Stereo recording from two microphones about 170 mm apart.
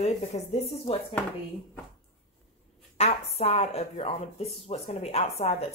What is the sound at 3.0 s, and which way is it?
Speech, 40° left (ahead or behind).